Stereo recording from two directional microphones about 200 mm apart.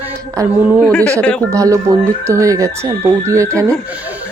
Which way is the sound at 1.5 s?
15° right (ahead or behind).